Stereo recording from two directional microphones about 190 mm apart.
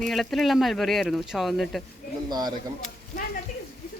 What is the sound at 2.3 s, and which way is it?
Speech, 20° right (ahead or behind).